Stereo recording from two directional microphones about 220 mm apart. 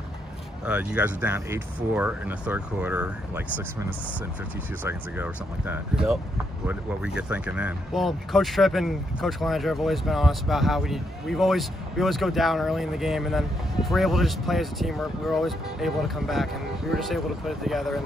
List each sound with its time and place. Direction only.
0.7 s speech: 5° right (ahead or behind)
4.8 s speech: 10° right (ahead or behind)